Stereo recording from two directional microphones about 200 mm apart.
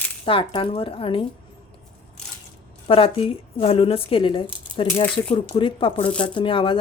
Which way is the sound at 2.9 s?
30° left (ahead or behind).